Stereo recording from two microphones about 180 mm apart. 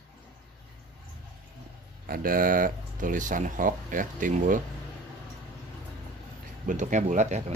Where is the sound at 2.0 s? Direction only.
55° right (ahead or behind).